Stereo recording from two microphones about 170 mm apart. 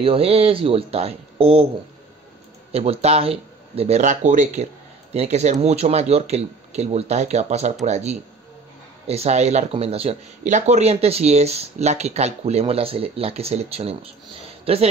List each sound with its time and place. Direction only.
0.0 s speech: 35° right (ahead or behind)
2.7 s speech: 35° right (ahead or behind)